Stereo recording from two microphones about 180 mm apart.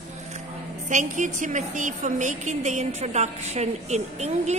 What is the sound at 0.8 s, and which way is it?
A woman's voice, 45° right (ahead or behind).